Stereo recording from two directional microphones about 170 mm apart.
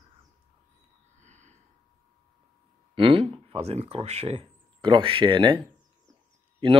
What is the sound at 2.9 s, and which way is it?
Speech, 30° right (ahead or behind).